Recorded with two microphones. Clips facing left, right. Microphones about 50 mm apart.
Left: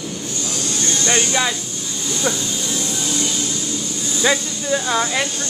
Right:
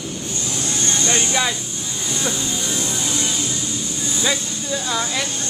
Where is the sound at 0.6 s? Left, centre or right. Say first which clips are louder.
Even; right.